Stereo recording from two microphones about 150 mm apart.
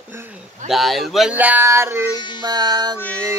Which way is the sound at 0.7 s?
Centre (ahead or behind).